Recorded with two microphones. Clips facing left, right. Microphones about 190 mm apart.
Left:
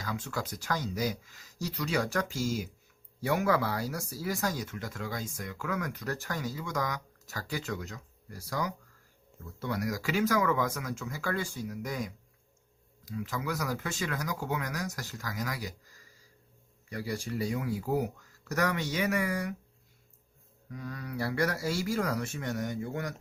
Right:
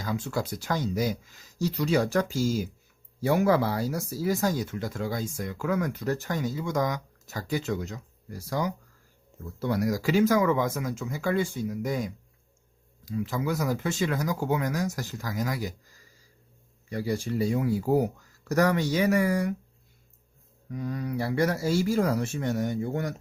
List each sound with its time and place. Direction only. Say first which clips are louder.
0.0 s speech: right 6 dB; 25° right (ahead or behind)
16.9 s speech: right 6 dB; 25° right (ahead or behind)
20.7 s speech: right 8 dB; 25° right (ahead or behind)